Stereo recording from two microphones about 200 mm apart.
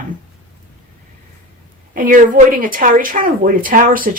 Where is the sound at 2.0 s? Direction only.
45° right (ahead or behind).